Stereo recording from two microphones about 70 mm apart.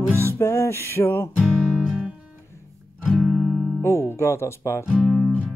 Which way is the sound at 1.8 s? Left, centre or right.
Centre.